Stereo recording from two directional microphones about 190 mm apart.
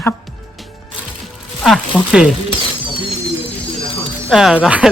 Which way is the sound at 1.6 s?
Centre (ahead or behind).